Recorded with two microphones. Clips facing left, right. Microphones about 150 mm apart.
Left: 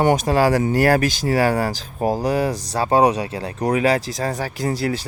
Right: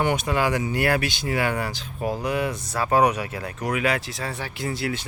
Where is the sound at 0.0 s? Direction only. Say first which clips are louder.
Left 6 dB; 40° left (ahead or behind).